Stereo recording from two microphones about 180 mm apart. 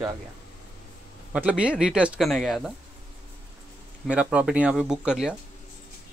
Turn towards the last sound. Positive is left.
turn(degrees=-5)  # may be behind; listen again after turning